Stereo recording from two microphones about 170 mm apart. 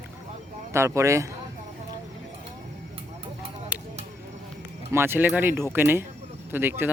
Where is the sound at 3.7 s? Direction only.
10° right (ahead or behind).